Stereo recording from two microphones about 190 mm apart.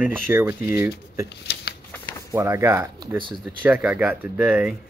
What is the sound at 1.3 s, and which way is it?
Shuffling cards, 60° left (ahead or behind).